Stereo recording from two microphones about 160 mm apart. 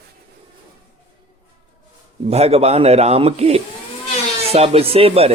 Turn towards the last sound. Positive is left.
turn(degrees=-40)  # may be behind; listen again after turning